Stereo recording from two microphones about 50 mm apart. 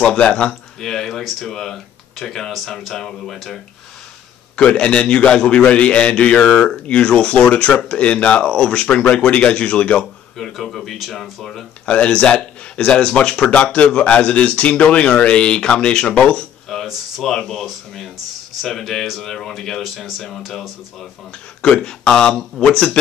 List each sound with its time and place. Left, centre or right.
0.0 s a man's voice: left
0.7 s speech: centre
4.6 s a man's voice: left
10.3 s speech: centre
11.8 s a man's voice: left
16.7 s a sound: centre
17.2 s speech: centre
21.6 s speech: centre